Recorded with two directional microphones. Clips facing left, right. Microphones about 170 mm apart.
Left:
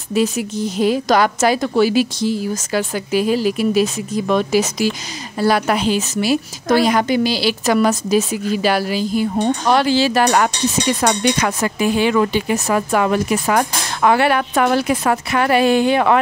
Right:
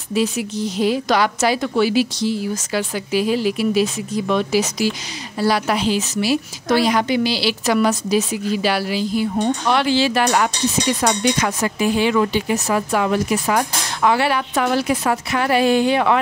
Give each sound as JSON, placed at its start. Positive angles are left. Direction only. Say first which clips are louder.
{"t": 0.1, "sound": "a woman's voice", "louder": "left 2 dB", "side_deg": 45}
{"t": 11.0, "sound": "speech", "louder": "left 2 dB", "side_deg": 55}